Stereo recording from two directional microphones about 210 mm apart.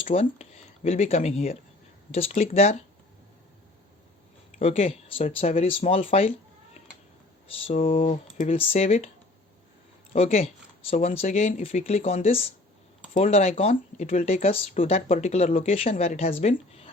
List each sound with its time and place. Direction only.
0.0 s speech: 30° left (ahead or behind)
4.6 s speech: 25° left (ahead or behind)
7.7 s speech: 40° left (ahead or behind)
7.9 s speech: 30° left (ahead or behind)
10.1 s speech: 30° left (ahead or behind)